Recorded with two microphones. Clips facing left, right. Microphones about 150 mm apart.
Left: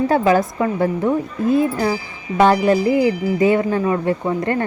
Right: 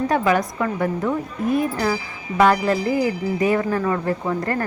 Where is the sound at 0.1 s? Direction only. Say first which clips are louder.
Left 4 dB; 30° left (ahead or behind).